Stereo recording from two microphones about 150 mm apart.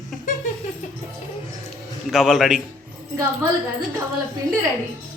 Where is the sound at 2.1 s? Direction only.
5° right (ahead or behind).